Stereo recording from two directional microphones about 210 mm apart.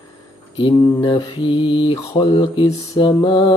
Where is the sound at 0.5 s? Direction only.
25° left (ahead or behind).